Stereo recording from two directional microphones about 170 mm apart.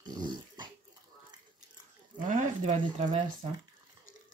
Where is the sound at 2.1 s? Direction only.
50° right (ahead or behind).